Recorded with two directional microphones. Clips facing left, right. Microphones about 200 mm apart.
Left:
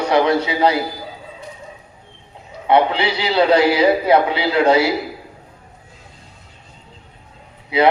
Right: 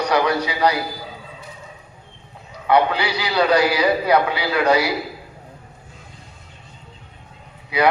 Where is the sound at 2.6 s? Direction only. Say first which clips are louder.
Left 2 dB; 25° left (ahead or behind).